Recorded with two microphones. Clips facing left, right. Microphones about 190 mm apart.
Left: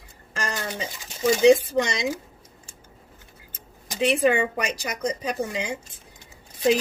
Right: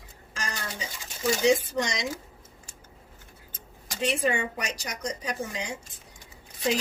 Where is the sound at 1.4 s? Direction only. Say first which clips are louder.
Left 7 dB; 60° left (ahead or behind).